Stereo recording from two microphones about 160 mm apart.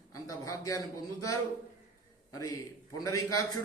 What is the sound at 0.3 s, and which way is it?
A man's voice, 20° left (ahead or behind).